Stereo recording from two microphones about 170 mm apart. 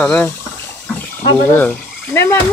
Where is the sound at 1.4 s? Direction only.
10° left (ahead or behind).